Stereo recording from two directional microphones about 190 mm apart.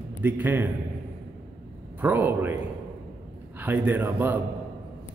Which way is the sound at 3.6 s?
10° right (ahead or behind).